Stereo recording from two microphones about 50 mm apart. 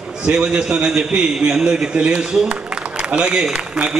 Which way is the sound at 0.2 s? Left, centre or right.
Centre.